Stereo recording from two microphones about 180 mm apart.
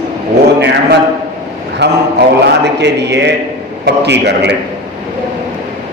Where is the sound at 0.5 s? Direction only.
70° right (ahead or behind).